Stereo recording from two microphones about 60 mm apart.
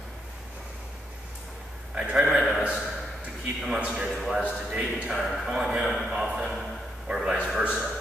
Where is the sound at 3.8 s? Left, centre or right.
Centre.